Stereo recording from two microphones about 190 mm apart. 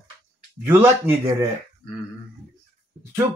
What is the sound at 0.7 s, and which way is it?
Speech, 10° right (ahead or behind).